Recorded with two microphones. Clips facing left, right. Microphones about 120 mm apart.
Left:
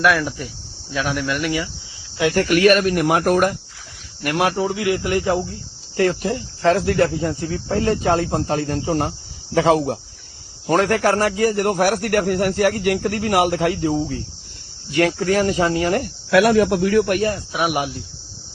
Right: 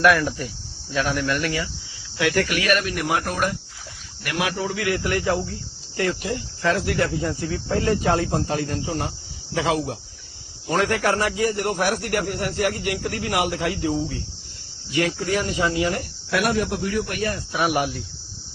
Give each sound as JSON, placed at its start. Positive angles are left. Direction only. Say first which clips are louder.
{"t": 0.0, "sound": "speech", "louder": "even", "side_deg": 0}
{"t": 2.1, "sound": "speech", "louder": "left 3 dB", "side_deg": 25}
{"t": 2.5, "sound": "a man's voice", "louder": "left 8 dB", "side_deg": 45}
{"t": 4.5, "sound": "speech", "louder": "left 4 dB", "side_deg": 25}
{"t": 6.0, "sound": "a man's voice", "louder": "left 5 dB", "side_deg": 40}
{"t": 16.3, "sound": "a man's voice", "louder": "left 8 dB", "side_deg": 90}
{"t": 17.5, "sound": "speech", "louder": "left 1 dB", "side_deg": 5}